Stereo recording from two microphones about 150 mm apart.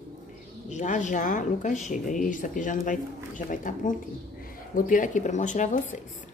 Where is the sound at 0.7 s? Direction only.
55° left (ahead or behind).